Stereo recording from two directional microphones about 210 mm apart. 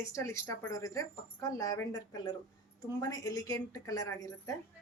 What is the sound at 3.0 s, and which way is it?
Speech, 15° left (ahead or behind).